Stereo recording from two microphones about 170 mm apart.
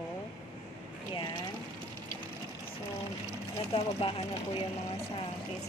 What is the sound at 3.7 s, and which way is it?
Speech, 35° left (ahead or behind).